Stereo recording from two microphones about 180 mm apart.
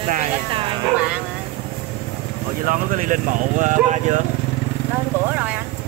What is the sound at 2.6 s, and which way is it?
Speech, 45° right (ahead or behind).